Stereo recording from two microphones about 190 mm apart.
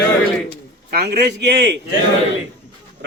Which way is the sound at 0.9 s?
60° right (ahead or behind).